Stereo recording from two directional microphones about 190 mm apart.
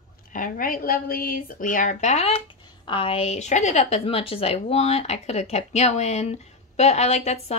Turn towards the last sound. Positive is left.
turn(degrees=35)  # may be behind; listen again after turning